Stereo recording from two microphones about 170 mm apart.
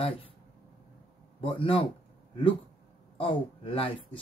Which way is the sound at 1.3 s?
30° left (ahead or behind).